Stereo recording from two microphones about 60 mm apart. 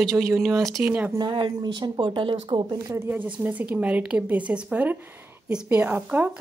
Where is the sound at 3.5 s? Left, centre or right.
Right.